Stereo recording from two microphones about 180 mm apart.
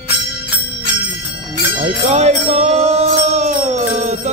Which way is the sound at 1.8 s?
40° right (ahead or behind).